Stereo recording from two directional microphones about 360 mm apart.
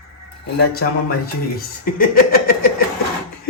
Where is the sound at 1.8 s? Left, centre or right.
Left.